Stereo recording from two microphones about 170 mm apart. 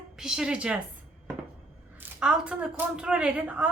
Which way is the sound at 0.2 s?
5° right (ahead or behind).